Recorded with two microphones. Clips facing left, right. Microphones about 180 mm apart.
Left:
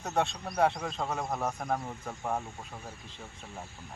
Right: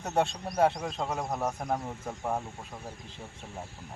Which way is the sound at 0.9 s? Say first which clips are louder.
Right 1 dB; 5° right (ahead or behind).